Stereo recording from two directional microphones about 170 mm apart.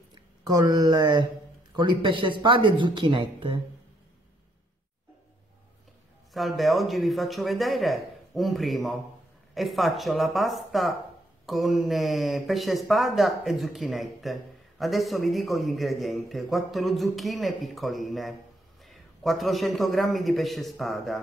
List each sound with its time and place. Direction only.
0.1 s speech: 20° right (ahead or behind)
6.3 s speech: centre (ahead or behind)